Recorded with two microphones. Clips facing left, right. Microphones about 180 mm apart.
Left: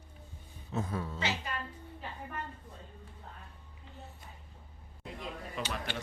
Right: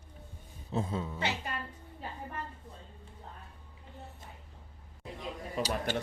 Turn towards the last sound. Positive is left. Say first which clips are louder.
# right 5 dB
turn(degrees=-45)  # may be behind; listen again after turning